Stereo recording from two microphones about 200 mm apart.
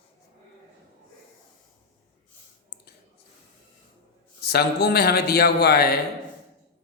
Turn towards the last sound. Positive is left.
turn(degrees=50)  # may be behind; listen again after turning